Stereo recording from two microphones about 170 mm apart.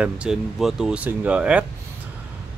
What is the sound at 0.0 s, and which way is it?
Speech, 5° right (ahead or behind).